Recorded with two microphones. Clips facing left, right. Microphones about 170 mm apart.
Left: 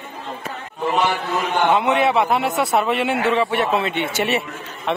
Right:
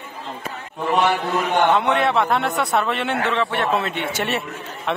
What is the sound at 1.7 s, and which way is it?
A man's voice, 5° left (ahead or behind).